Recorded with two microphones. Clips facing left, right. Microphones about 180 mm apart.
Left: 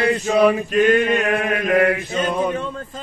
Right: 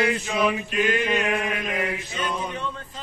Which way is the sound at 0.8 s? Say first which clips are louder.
Left 7 dB; 55° left (ahead or behind).